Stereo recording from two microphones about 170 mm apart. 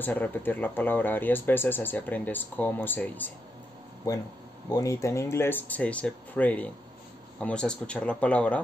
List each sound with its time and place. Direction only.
0.0 s speech: 10° left (ahead or behind)
4.1 s speech: 20° left (ahead or behind)